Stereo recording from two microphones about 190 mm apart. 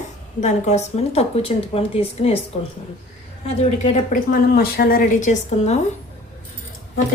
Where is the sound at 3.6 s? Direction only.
40° left (ahead or behind).